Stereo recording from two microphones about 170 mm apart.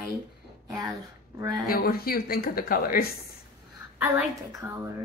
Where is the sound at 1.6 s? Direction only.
60° left (ahead or behind).